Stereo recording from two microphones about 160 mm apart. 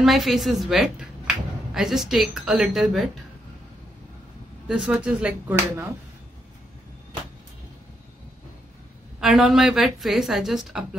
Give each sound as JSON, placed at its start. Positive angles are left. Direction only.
{"t": 0.0, "sound": "a woman's voice", "side_deg": 0}
{"t": 4.6, "sound": "a woman's voice", "side_deg": -5}
{"t": 9.2, "sound": "a woman's voice", "side_deg": -5}